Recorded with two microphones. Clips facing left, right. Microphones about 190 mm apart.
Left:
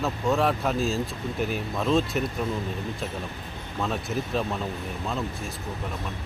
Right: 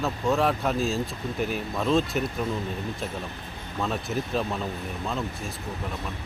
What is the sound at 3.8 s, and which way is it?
A man's voice, centre (ahead or behind).